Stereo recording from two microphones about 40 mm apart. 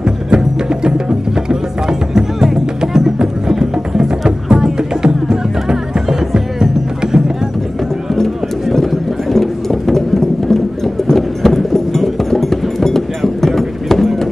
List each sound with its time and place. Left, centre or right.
0.0 s music: centre
9.3 s clip-clop: centre
13.4 s music: centre